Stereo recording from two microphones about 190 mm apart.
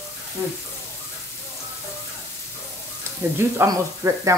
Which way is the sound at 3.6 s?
15° right (ahead or behind).